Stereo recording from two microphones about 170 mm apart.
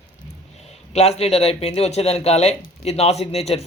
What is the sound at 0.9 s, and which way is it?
A man's voice, 40° left (ahead or behind).